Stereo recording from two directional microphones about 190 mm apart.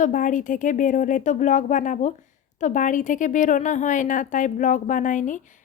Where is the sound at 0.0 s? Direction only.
45° left (ahead or behind).